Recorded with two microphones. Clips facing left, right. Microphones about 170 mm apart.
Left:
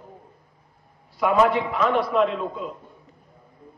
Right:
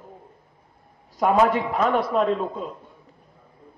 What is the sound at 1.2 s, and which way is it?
A man's voice, 45° right (ahead or behind).